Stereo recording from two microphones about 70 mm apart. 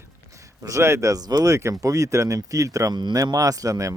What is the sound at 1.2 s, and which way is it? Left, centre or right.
Speech, right.